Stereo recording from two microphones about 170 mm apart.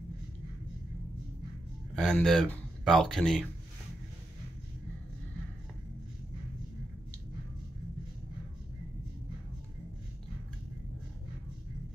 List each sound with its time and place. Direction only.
2.0 s speech: centre (ahead or behind)